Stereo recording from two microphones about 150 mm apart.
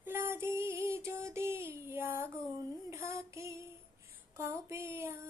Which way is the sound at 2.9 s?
20° right (ahead or behind).